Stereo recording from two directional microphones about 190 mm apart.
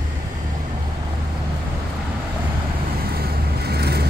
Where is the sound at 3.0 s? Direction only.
55° right (ahead or behind).